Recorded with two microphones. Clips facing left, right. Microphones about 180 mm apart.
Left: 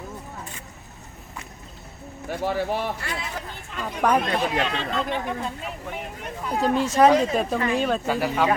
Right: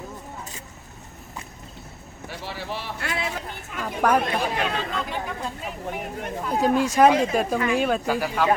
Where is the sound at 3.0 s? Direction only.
65° right (ahead or behind).